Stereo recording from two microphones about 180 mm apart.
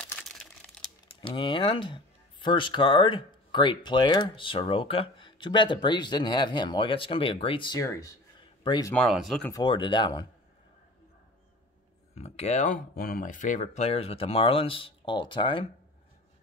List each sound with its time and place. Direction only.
0.0 s crumpling: 5° left (ahead or behind)
1.2 s speech: 25° left (ahead or behind)
7.8 s speech: 15° left (ahead or behind)
8.9 s speech: centre (ahead or behind)
9.5 s speech: 25° left (ahead or behind)
12.2 s speech: 35° left (ahead or behind)